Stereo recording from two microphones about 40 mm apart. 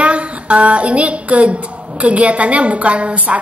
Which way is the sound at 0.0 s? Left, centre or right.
Right.